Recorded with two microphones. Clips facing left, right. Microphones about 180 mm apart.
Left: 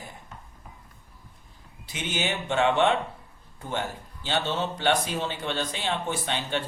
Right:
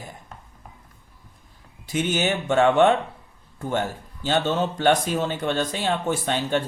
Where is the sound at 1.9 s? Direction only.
45° right (ahead or behind).